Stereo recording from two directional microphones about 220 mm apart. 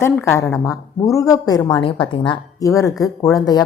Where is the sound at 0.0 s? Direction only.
10° left (ahead or behind).